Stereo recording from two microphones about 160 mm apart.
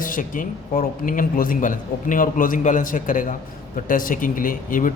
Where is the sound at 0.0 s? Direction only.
55° left (ahead or behind).